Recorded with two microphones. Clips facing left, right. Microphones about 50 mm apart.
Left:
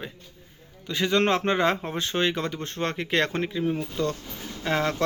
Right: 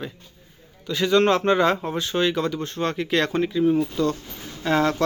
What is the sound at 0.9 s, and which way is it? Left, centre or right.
Speech, left.